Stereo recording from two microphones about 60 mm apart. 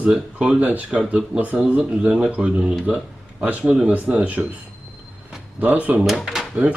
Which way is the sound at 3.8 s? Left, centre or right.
Right.